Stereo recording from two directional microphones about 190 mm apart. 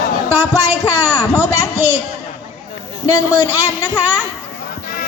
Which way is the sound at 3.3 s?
10° right (ahead or behind).